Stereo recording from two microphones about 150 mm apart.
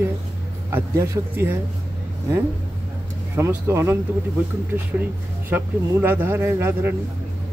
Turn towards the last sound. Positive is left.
turn(degrees=-15)  # may be behind; listen again after turning